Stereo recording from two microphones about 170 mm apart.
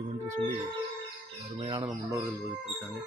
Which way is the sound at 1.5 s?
25° right (ahead or behind).